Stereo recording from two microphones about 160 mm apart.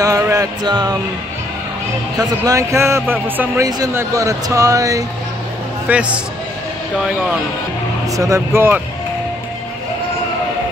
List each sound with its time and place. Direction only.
0.0 s music: 20° right (ahead or behind)
2.1 s speech: 20° right (ahead or behind)
5.9 s speech: 10° right (ahead or behind)
8.2 s speech: 15° right (ahead or behind)